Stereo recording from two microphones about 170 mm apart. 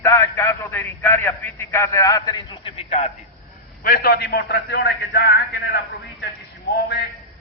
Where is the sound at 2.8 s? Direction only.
50° left (ahead or behind).